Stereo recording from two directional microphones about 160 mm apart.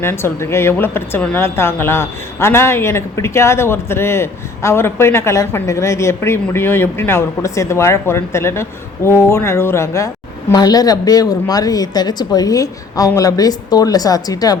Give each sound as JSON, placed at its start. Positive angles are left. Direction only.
{"t": 0.0, "sound": "a woman's voice", "side_deg": 15}